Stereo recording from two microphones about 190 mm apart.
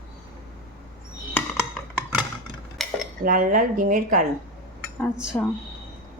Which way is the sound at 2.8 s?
Centre (ahead or behind).